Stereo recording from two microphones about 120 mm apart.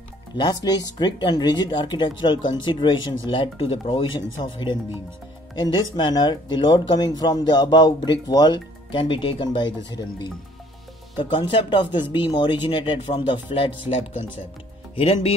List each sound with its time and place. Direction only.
0.4 s speech: 35° left (ahead or behind); by 15.3 s 55° left (ahead or behind)